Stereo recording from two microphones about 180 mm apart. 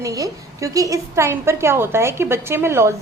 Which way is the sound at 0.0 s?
20° right (ahead or behind).